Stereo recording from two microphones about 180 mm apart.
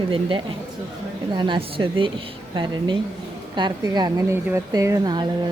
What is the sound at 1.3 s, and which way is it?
A woman's voice, 25° right (ahead or behind).